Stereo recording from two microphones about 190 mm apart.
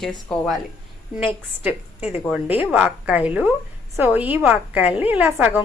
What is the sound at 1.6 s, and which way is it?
A woman's voice, 10° right (ahead or behind).